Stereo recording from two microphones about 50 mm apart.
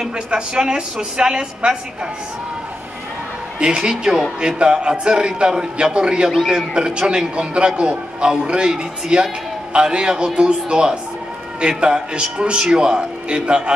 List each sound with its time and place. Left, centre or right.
0.3 s a man's voice: centre
3.5 s a man's voice: centre
4.0 s speech: centre
4.4 s a man's voice: centre